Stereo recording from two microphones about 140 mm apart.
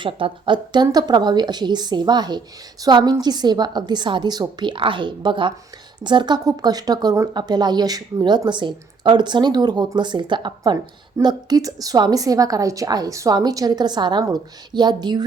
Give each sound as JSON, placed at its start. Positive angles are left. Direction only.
{"t": 0.0, "sound": "a woman's voice", "side_deg": -35}